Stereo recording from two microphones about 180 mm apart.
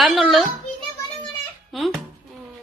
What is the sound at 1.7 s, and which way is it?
Speech, centre (ahead or behind).